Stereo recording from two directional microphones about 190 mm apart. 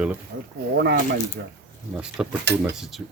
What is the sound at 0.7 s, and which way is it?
Speech, 60° right (ahead or behind).